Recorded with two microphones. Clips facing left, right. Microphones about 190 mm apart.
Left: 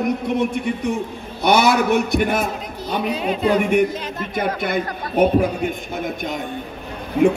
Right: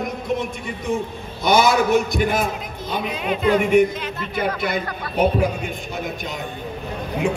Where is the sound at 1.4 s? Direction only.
65° left (ahead or behind).